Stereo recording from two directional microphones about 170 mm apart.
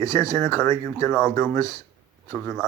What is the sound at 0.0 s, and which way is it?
Speech, 20° left (ahead or behind).